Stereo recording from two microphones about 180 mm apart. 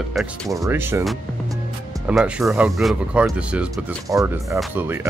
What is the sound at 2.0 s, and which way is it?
Speech, 5° right (ahead or behind).